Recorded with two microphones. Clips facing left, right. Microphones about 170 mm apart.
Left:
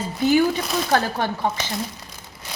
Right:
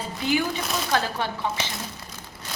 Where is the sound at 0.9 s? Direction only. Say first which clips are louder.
Left 4 dB; 50° left (ahead or behind).